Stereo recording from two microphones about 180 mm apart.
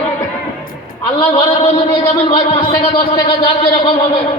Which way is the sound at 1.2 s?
30° left (ahead or behind).